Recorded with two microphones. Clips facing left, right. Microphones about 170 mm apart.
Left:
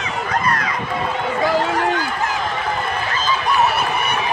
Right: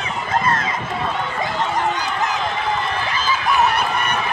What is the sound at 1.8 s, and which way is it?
Run, 20° right (ahead or behind).